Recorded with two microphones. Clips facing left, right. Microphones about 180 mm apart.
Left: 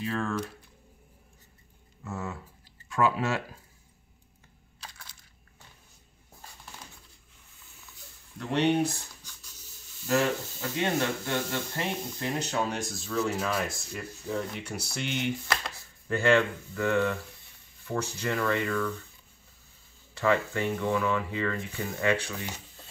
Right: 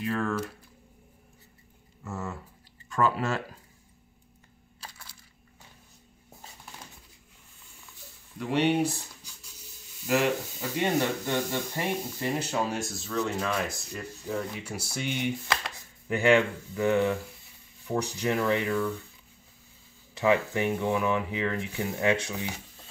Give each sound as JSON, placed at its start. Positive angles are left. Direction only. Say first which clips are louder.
{"t": 0.0, "sound": "a sound", "louder": "right 2 dB", "side_deg": -5}
{"t": 2.0, "sound": "a sound", "louder": "even", "side_deg": 0}
{"t": 2.9, "sound": "speech", "louder": "even", "side_deg": 0}
{"t": 4.8, "sound": "crushing", "louder": "right 1 dB", "side_deg": -5}
{"t": 8.4, "sound": "speech", "louder": "even", "side_deg": -10}
{"t": 20.2, "sound": "speech", "louder": "right 2 dB", "side_deg": -15}